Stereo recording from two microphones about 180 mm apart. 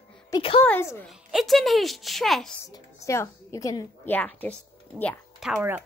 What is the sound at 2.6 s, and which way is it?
A woman's voice, 15° left (ahead or behind).